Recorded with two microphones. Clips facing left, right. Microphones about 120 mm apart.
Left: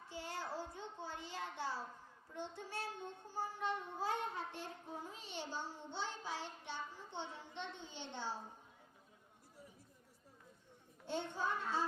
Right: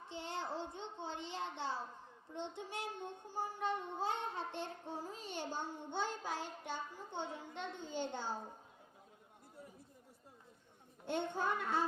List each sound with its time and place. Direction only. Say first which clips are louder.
0.1 s a child's voice: right 2 dB; 25° right (ahead or behind)
2.3 s child singing: right 2 dB; 20° right (ahead or behind); by 8.4 s 50° right (ahead or behind)
11.0 s a child's voice: right 3 dB; 55° right (ahead or behind)